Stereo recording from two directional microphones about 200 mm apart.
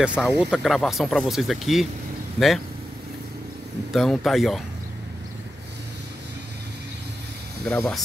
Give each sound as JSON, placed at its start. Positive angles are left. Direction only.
{"t": 0.0, "sound": "speech", "side_deg": -5}
{"t": 3.9, "sound": "speech", "side_deg": 0}
{"t": 7.6, "sound": "speech", "side_deg": 5}